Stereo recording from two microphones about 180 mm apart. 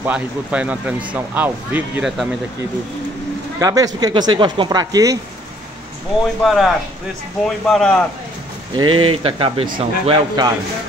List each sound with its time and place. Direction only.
0.0 s speech: 5° right (ahead or behind)
3.5 s speech: 20° right (ahead or behind)
6.4 s a man's voice: centre (ahead or behind)
8.7 s speech: 30° right (ahead or behind)